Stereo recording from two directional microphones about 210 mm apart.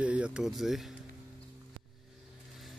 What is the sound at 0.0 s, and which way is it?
Speech, 5° right (ahead or behind).